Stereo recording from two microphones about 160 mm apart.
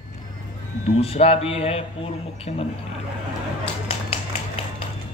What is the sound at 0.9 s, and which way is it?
A man's voice, 40° left (ahead or behind).